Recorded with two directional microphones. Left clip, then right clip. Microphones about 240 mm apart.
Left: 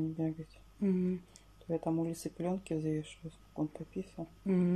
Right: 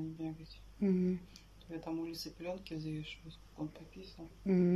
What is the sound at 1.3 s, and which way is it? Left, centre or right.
Speech, left.